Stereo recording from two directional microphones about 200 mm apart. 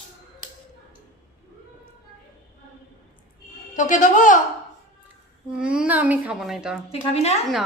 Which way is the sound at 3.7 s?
40° left (ahead or behind).